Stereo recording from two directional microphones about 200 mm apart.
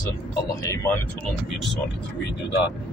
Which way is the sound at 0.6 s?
15° left (ahead or behind).